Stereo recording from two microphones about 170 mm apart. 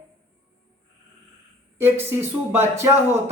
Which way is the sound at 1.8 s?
15° right (ahead or behind).